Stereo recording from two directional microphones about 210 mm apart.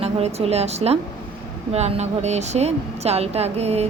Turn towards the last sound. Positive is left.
turn(degrees=-30)  # may be behind; listen again after turning